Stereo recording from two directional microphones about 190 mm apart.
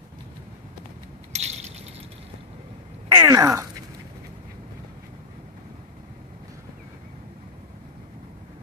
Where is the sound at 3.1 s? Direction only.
15° right (ahead or behind).